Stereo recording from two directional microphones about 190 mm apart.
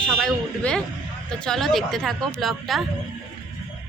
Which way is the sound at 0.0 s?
5° left (ahead or behind).